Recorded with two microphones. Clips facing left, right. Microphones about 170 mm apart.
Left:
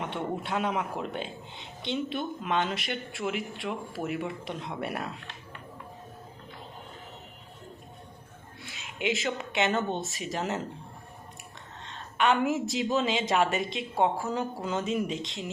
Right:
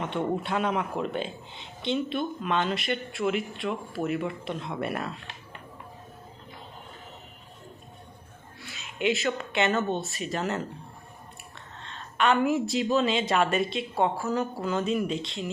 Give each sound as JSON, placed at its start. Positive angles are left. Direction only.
{"t": 0.4, "sound": "speech", "side_deg": 10}
{"t": 8.6, "sound": "speech", "side_deg": 15}
{"t": 11.8, "sound": "speech", "side_deg": 15}